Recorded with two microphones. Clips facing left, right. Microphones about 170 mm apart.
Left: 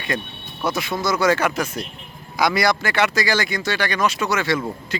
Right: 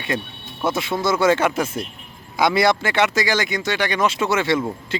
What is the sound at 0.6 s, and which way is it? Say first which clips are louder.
Speech: right 2 dB; 25° right (ahead or behind).